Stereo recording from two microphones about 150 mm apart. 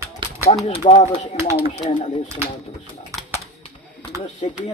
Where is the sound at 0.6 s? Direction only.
35° left (ahead or behind).